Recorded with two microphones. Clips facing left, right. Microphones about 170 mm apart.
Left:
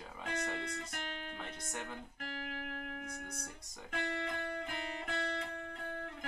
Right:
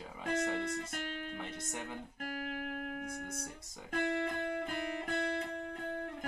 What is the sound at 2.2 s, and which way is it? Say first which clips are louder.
Music: right 5 dB; 45° right (ahead or behind).